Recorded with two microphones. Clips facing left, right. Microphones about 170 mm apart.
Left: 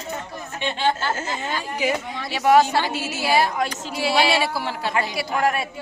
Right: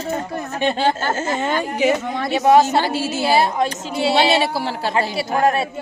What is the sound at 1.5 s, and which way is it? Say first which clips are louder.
Speech: right 6 dB; 55° right (ahead or behind).